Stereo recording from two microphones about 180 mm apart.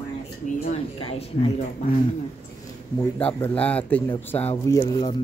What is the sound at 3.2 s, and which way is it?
Speech, 10° left (ahead or behind).